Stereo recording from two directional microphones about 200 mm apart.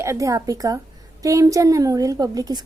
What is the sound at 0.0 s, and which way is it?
A woman's voice, 15° right (ahead or behind).